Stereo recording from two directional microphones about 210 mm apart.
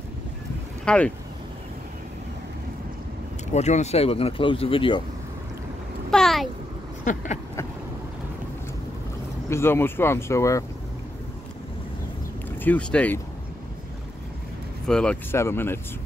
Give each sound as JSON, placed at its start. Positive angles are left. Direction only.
{"t": 0.8, "sound": "speech", "side_deg": 5}
{"t": 3.5, "sound": "speech", "side_deg": 30}
{"t": 6.1, "sound": "a sound", "side_deg": 0}
{"t": 7.1, "sound": "a sound", "side_deg": 35}
{"t": 9.5, "sound": "speech", "side_deg": 10}
{"t": 12.4, "sound": "speech", "side_deg": 10}
{"t": 14.9, "sound": "speech", "side_deg": 5}